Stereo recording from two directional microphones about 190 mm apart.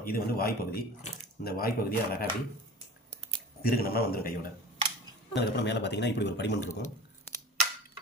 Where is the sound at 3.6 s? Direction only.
50° left (ahead or behind).